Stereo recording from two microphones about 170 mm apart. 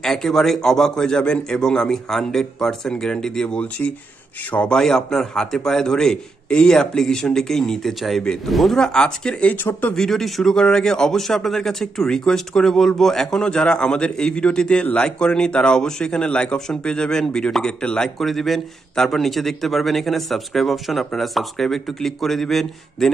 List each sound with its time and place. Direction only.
0.0 s a man's voice: centre (ahead or behind)